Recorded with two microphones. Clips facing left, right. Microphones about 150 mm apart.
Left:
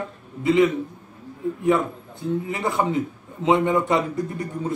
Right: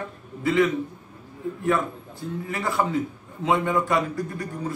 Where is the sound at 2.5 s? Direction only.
20° left (ahead or behind).